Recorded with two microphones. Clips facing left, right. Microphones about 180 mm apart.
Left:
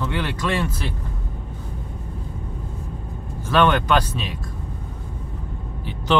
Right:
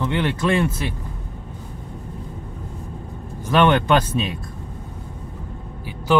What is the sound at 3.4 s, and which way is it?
Speech, 20° right (ahead or behind).